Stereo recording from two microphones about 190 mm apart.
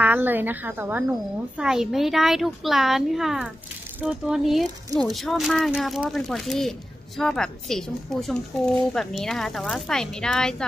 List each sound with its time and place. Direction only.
0.0 s a woman's voice: 10° right (ahead or behind)